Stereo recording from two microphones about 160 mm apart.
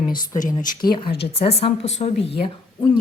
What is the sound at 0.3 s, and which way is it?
Speech, 55° left (ahead or behind).